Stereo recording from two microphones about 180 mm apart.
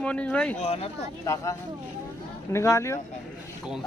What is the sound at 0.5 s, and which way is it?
Speech, 35° left (ahead or behind).